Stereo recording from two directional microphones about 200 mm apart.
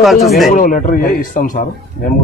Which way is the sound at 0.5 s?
40° left (ahead or behind).